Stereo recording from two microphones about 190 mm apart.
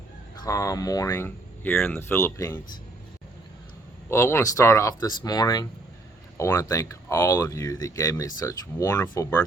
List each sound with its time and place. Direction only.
0.4 s speech: 15° left (ahead or behind)
4.1 s speech: 15° left (ahead or behind)